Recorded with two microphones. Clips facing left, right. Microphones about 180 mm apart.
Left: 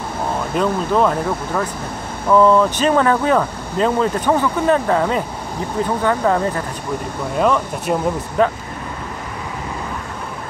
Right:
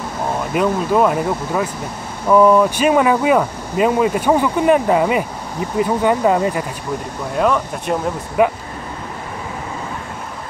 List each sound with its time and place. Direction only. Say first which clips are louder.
0.6 s speech: right 1 dB; 10° right (ahead or behind)
7.3 s speech: even; centre (ahead or behind)
8.4 s speech: right 2 dB; 10° right (ahead or behind)